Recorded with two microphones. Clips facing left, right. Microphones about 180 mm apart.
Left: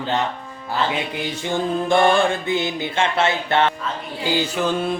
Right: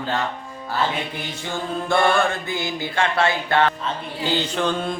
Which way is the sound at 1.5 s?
15° left (ahead or behind).